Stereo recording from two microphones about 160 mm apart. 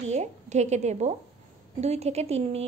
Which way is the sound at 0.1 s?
45° right (ahead or behind).